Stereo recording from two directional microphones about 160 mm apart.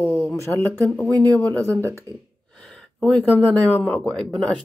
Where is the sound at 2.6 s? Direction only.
Centre (ahead or behind).